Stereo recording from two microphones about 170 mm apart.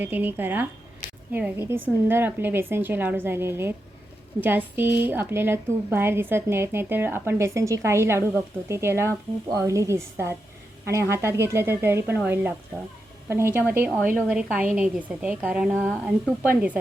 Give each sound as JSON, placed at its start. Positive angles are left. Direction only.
{"t": 0.0, "sound": "a woman's voice", "side_deg": -10}